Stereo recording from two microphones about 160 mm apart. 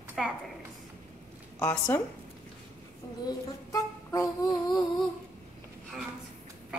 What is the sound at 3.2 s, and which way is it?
Speech, 20° left (ahead or behind).